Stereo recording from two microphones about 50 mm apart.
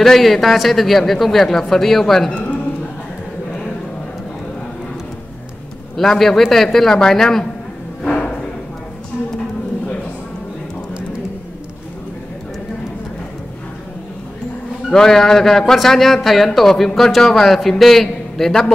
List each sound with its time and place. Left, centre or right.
0.0 s speech: centre
2.3 s speech: left
5.9 s speech: centre
8.1 s a sound: left
14.9 s a man's voice: centre